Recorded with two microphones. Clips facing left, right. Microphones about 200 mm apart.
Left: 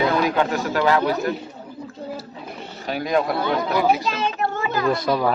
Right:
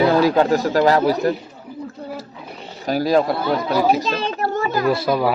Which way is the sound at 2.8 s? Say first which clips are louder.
Right 5 dB; 35° right (ahead or behind).